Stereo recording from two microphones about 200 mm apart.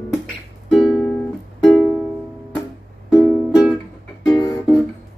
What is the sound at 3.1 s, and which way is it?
Music, centre (ahead or behind).